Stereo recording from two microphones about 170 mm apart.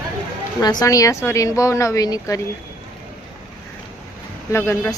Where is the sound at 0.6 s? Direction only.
25° left (ahead or behind).